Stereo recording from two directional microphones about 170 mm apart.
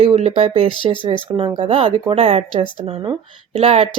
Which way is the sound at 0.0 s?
35° right (ahead or behind).